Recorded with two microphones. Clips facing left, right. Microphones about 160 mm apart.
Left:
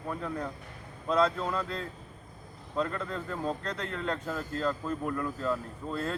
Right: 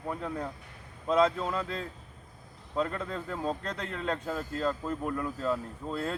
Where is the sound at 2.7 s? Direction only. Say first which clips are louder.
Even; 20° right (ahead or behind).